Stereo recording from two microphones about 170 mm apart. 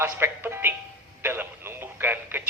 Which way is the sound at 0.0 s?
15° right (ahead or behind).